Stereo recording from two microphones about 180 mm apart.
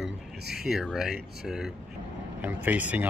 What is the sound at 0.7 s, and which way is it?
Speech, centre (ahead or behind).